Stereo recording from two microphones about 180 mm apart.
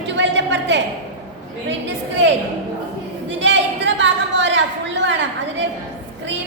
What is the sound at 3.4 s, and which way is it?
A woman's voice, 90° right.